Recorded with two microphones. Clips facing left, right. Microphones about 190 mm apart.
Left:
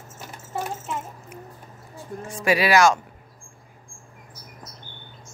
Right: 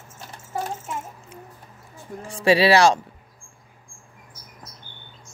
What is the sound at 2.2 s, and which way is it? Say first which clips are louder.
Speech: right 4 dB; 30° right (ahead or behind).